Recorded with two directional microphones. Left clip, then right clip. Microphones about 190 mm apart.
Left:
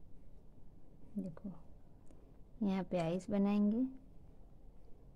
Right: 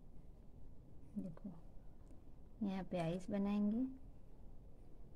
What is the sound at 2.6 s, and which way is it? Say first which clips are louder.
A woman's voice: left 5 dB; 20° left (ahead or behind).